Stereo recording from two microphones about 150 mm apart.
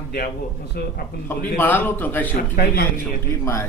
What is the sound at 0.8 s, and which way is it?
Speech, 90° left.